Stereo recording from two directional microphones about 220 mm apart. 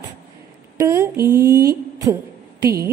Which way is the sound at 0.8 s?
15° right (ahead or behind).